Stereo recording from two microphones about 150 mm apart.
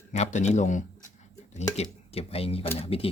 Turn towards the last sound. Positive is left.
turn(degrees=40)  # may be behind; listen again after turning